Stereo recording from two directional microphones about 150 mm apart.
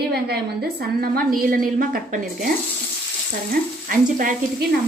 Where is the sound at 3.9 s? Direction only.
65° right (ahead or behind).